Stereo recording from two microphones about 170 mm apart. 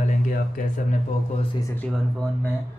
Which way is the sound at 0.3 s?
55° left (ahead or behind).